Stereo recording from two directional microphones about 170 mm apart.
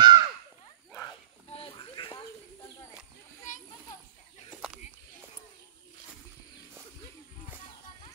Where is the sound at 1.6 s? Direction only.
30° left (ahead or behind).